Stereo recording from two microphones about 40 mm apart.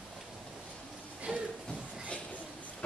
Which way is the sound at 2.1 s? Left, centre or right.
Left.